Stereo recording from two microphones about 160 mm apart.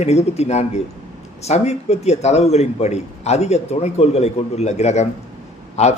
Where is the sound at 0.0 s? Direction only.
45° left (ahead or behind).